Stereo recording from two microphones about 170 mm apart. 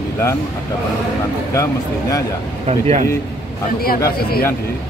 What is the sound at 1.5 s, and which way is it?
Speech, 20° left (ahead or behind).